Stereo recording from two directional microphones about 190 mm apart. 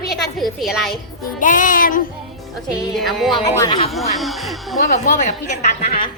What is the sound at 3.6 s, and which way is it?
Speech, 25° left (ahead or behind).